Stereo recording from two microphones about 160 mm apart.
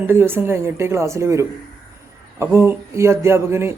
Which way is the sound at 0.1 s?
15° right (ahead or behind).